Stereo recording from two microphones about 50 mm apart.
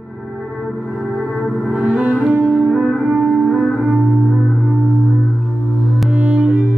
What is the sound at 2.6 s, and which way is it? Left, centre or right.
Music, centre.